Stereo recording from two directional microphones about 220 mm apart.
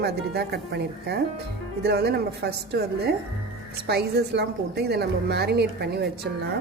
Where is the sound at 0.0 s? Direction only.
50° right (ahead or behind).